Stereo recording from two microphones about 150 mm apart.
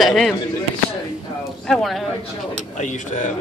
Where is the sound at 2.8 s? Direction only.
55° left (ahead or behind).